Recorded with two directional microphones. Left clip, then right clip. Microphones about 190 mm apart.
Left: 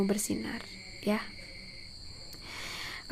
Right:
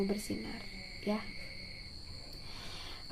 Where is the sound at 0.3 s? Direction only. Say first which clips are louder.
Left 5 dB; 30° left (ahead or behind).